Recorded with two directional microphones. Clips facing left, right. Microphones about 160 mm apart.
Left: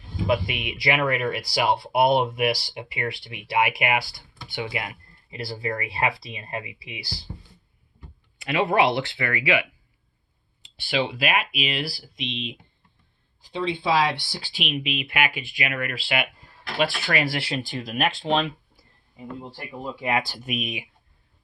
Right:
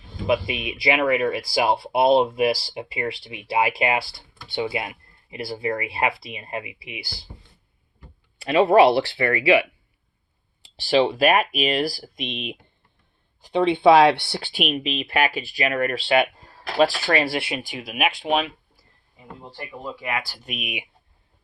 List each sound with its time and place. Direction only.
0.3 s speech: 20° right (ahead or behind)
8.4 s speech: 30° right (ahead or behind); by 18.5 s 10° right (ahead or behind)
20.0 s speech: 25° left (ahead or behind)
20.4 s speech: 5° left (ahead or behind)